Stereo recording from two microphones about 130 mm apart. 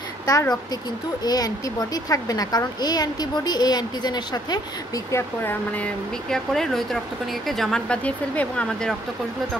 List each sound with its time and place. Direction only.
0.3 s a woman's voice: 25° left (ahead or behind)
5.4 s speech: 15° left (ahead or behind)
6.3 s speech: 5° left (ahead or behind)